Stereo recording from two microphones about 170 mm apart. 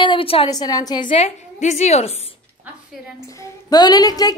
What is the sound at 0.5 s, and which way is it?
Speech, 20° left (ahead or behind).